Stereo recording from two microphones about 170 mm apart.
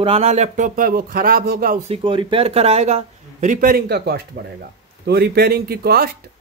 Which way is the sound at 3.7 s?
70° right (ahead or behind).